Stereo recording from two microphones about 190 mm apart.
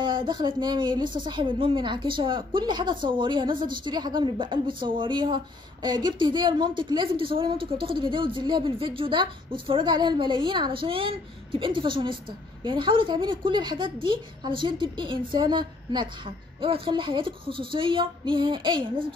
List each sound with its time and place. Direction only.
0.0 s a woman's voice: 25° right (ahead or behind)